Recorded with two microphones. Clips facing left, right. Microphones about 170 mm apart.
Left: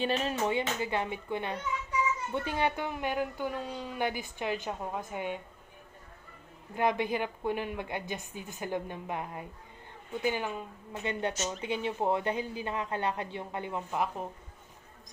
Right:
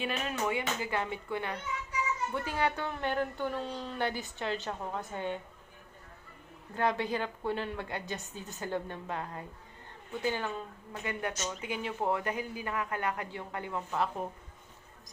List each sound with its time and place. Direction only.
0.0 s speech: 30° left (ahead or behind); by 5.4 s 15° left (ahead or behind)
6.7 s speech: 15° left (ahead or behind)
11.0 s speech: 25° left (ahead or behind)